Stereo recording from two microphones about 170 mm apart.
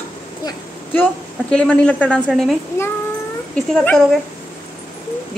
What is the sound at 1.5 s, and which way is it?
A woman's voice, 5° left (ahead or behind).